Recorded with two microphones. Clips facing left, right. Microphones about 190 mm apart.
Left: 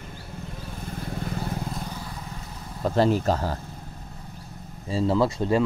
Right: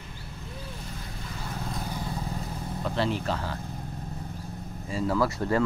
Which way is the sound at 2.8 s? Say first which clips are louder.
Left 7 dB; 40° left (ahead or behind).